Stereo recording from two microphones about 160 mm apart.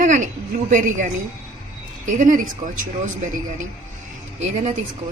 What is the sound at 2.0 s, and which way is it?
Speech, 55° right (ahead or behind).